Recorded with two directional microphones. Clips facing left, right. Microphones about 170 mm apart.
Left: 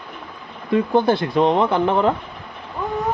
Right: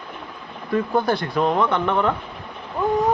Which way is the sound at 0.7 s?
25° left (ahead or behind).